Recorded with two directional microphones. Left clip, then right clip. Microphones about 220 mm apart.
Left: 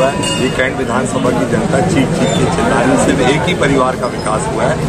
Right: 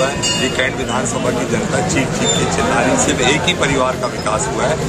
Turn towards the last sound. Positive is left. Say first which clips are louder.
# left 2 dB
turn(degrees=-5)  # may be behind; listen again after turning